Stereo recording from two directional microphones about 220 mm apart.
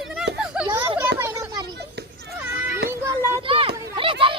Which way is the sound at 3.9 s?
25° right (ahead or behind).